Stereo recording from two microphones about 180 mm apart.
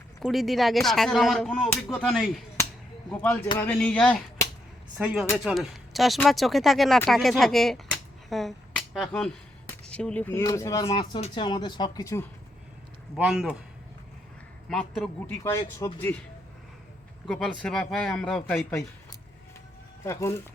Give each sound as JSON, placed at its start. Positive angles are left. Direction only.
{"t": 0.2, "sound": "a man's voice", "side_deg": 0}
{"t": 4.9, "sound": "a man's voice", "side_deg": -5}
{"t": 10.8, "sound": "speech", "side_deg": 30}
{"t": 13.1, "sound": "a man's voice", "side_deg": 0}
{"t": 14.7, "sound": "a man's voice", "side_deg": 0}
{"t": 15.4, "sound": "speech", "side_deg": 15}
{"t": 17.2, "sound": "a man's voice", "side_deg": 0}
{"t": 20.1, "sound": "speech", "side_deg": 15}